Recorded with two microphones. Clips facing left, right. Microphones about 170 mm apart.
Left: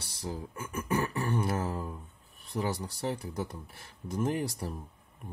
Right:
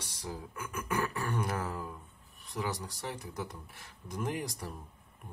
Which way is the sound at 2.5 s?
30° left (ahead or behind).